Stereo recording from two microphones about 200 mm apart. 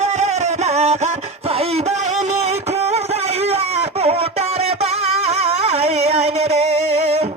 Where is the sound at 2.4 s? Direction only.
30° right (ahead or behind).